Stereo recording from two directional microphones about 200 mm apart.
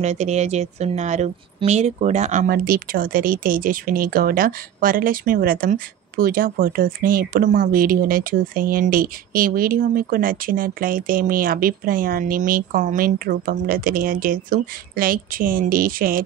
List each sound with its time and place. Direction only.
0.0 s a woman's voice: 35° right (ahead or behind)